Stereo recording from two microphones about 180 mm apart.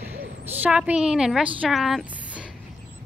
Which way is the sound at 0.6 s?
5° right (ahead or behind).